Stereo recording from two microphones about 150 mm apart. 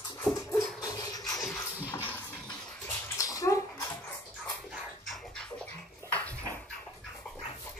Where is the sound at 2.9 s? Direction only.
20° left (ahead or behind).